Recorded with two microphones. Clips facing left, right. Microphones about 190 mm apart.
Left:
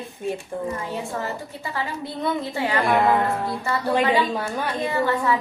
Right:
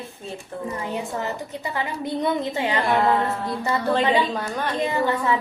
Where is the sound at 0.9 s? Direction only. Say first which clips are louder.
Right 1 dB; 20° right (ahead or behind).